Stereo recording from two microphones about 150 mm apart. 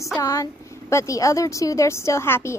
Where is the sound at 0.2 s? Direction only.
20° left (ahead or behind).